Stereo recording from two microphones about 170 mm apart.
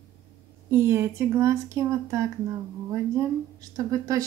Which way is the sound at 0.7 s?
15° right (ahead or behind).